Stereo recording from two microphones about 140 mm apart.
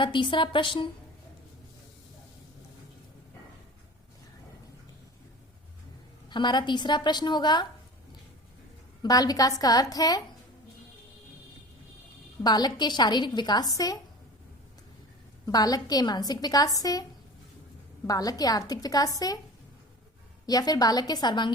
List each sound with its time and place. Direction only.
0.0 s a woman's voice: 35° left (ahead or behind)
6.3 s a woman's voice: 30° left (ahead or behind)
9.0 s a woman's voice: 25° left (ahead or behind)
12.4 s a woman's voice: 30° left (ahead or behind)
15.4 s a woman's voice: 25° left (ahead or behind)
20.5 s a woman's voice: 30° left (ahead or behind)